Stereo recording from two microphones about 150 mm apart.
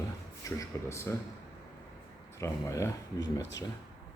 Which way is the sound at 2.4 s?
20° left (ahead or behind).